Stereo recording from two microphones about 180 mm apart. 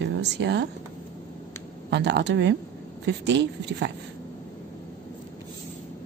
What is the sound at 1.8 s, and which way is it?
Speech, 70° right (ahead or behind).